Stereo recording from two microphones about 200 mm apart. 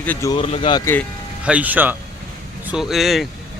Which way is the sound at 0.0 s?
10° left (ahead or behind).